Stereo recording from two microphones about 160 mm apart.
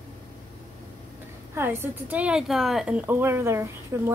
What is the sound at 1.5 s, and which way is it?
A woman's voice, 15° right (ahead or behind).